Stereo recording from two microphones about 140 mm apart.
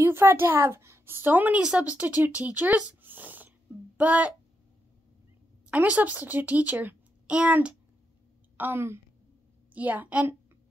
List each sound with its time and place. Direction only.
0.0 s a child's voice: 15° right (ahead or behind)
5.7 s speech: 10° right (ahead or behind)